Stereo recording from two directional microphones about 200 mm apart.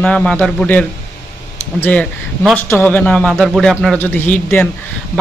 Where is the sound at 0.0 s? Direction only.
5° left (ahead or behind).